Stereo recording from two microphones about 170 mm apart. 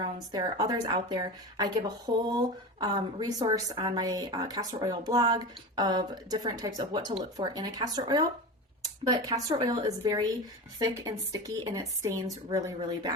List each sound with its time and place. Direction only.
0.3 s a woman's voice: 20° right (ahead or behind)